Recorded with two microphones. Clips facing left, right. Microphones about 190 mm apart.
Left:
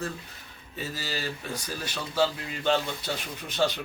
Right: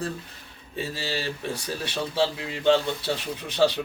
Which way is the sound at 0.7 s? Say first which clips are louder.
Right 4 dB; 30° right (ahead or behind).